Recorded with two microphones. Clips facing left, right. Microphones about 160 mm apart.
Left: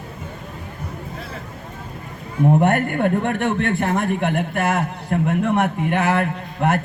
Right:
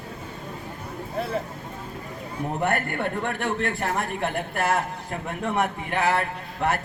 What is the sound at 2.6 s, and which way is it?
Music, 55° left (ahead or behind).